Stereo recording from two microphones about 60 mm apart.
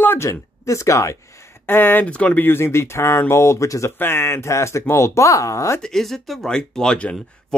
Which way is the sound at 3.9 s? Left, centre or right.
Left.